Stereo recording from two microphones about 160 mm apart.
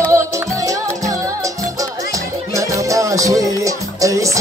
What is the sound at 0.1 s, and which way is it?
Music, 20° right (ahead or behind).